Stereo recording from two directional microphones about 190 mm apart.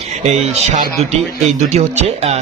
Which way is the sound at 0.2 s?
35° right (ahead or behind).